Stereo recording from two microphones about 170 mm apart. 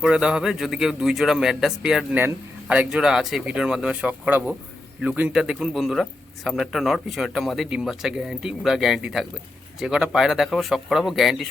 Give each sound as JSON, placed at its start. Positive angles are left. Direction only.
{"t": 0.0, "sound": "speech", "side_deg": -5}